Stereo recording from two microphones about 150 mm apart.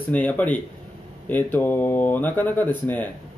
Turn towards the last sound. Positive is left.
turn(degrees=10)  # may be behind; listen again after turning